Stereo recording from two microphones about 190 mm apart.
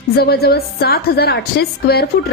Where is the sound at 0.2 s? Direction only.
55° left (ahead or behind).